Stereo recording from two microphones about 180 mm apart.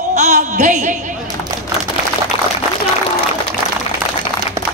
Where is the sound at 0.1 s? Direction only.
40° right (ahead or behind).